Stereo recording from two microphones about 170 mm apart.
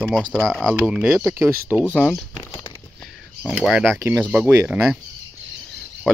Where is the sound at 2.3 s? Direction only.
15° left (ahead or behind).